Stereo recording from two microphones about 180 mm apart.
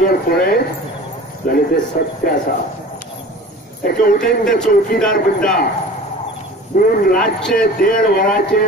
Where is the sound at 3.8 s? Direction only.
50° left (ahead or behind).